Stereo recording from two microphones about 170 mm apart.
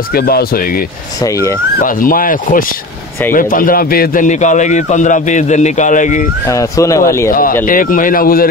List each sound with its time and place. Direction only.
0.1 s speech: 65° left (ahead or behind)
1.8 s a man's voice: 55° left (ahead or behind)
6.5 s speech: 20° left (ahead or behind)
7.2 s speech: 55° left (ahead or behind)